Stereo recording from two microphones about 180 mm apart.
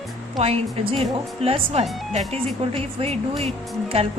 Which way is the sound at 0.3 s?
35° right (ahead or behind).